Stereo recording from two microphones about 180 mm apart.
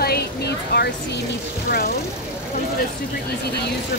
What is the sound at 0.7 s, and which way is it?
Speech, 70° left (ahead or behind).